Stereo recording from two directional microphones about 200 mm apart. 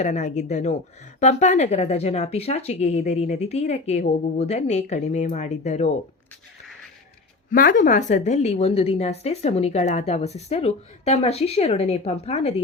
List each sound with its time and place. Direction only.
0.0 s a woman's voice: 35° left (ahead or behind)
7.5 s a woman's voice: 45° left (ahead or behind)